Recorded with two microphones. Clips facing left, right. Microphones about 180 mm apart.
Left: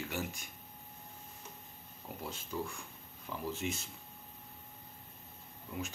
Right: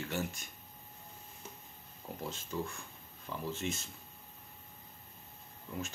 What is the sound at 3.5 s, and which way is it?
Speech, 10° left (ahead or behind).